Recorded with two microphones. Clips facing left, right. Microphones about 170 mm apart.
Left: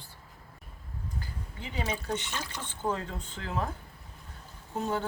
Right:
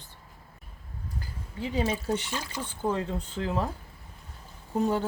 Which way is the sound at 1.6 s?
40° right (ahead or behind).